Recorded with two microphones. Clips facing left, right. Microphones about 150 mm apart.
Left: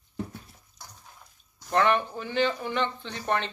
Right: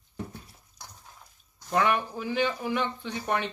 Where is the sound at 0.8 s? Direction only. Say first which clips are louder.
Right 1 dB; 35° right (ahead or behind).